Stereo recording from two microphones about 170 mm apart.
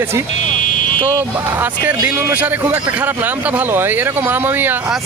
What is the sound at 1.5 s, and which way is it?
Speech, 10° right (ahead or behind).